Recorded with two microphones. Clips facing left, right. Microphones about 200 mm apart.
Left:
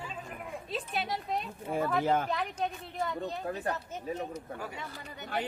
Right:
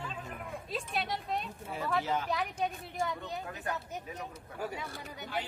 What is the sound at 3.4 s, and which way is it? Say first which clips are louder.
Speech: left 5 dB; 40° left (ahead or behind).